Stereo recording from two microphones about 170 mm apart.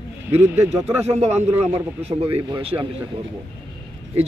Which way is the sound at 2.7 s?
15° right (ahead or behind).